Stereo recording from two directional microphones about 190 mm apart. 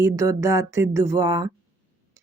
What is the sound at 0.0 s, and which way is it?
Speech, 15° right (ahead or behind).